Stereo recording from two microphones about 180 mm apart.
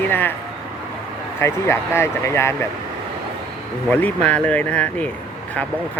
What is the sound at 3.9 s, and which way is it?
Speech, 10° left (ahead or behind).